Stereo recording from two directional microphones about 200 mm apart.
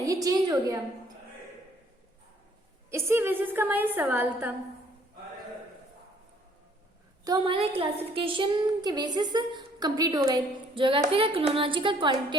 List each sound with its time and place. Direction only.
0.0 s a woman's voice: 15° right (ahead or behind)
2.9 s a woman's voice: 10° right (ahead or behind)
7.3 s a woman's voice: 20° right (ahead or behind)